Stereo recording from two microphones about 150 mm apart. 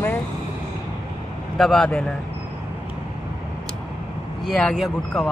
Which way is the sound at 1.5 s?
Centre (ahead or behind).